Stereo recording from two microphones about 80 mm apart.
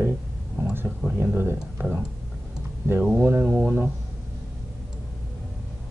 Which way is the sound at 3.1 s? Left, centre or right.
Right.